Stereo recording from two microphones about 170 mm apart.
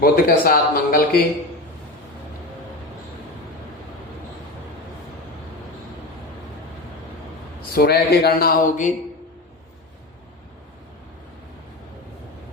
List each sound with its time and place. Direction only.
0.0 s speech: 60° left (ahead or behind)
7.7 s speech: 65° left (ahead or behind); by 8.9 s 50° left (ahead or behind)